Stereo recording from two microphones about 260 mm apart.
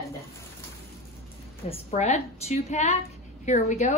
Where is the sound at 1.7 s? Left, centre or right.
Left.